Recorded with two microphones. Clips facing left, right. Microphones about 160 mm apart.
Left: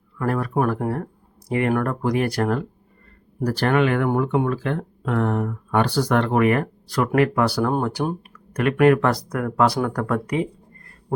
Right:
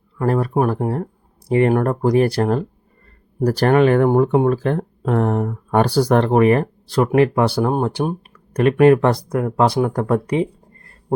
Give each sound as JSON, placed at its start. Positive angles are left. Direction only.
{"t": 0.2, "sound": "speech", "side_deg": -30}
{"t": 3.4, "sound": "speech", "side_deg": -40}